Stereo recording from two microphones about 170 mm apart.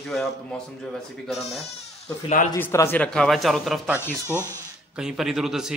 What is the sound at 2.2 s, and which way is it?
Speech, 50° left (ahead or behind).